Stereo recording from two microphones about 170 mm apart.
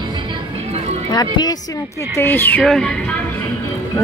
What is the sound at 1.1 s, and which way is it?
Speech, 25° left (ahead or behind).